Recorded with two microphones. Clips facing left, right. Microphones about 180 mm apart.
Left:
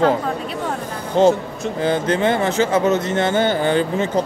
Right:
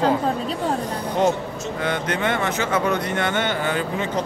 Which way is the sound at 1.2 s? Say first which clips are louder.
Left 7 dB; 30° left (ahead or behind).